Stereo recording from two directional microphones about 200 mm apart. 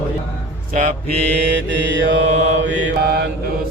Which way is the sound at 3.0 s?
50° right (ahead or behind).